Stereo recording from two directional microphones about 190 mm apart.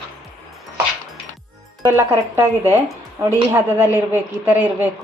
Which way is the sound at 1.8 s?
15° right (ahead or behind).